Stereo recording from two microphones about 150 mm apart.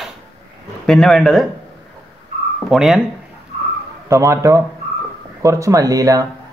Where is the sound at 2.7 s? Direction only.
Centre (ahead or behind).